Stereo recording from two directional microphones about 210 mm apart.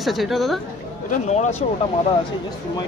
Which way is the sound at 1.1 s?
35° left (ahead or behind).